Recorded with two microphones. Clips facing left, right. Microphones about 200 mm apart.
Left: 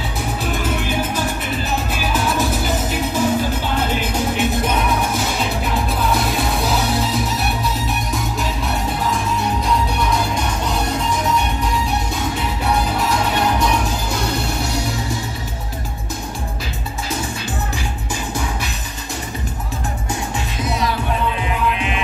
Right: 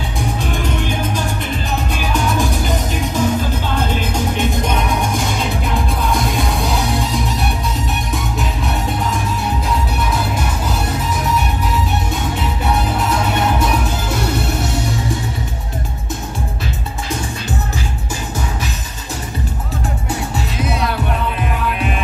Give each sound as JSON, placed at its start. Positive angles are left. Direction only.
{"t": 2.1, "sound": "music", "side_deg": 5}
{"t": 21.7, "sound": "music", "side_deg": -45}